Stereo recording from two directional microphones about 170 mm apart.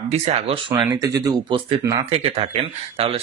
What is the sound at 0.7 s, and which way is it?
Speech, 10° right (ahead or behind).